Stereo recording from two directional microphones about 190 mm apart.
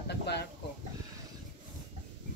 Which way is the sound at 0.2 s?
60° left (ahead or behind).